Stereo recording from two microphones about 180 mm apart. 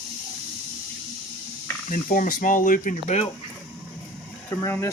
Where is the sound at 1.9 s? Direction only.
50° left (ahead or behind).